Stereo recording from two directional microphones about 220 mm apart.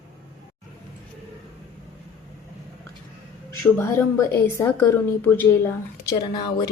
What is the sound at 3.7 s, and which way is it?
A woman's voice, 10° left (ahead or behind).